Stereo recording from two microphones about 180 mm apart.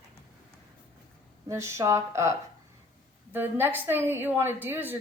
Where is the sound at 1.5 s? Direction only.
15° right (ahead or behind).